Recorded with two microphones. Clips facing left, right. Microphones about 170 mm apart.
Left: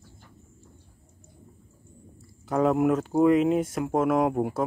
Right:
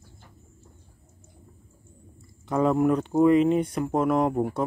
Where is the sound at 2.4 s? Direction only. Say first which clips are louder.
Even; 5° left (ahead or behind).